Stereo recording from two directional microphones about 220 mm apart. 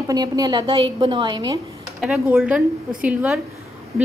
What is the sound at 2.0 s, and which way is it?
A woman's voice, centre (ahead or behind).